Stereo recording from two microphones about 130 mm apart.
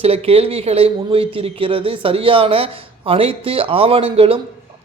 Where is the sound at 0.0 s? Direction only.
50° right (ahead or behind).